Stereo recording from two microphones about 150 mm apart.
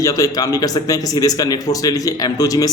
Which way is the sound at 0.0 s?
25° left (ahead or behind).